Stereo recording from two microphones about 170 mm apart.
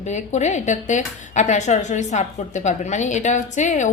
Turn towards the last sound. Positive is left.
turn(degrees=45)  # may be behind; listen again after turning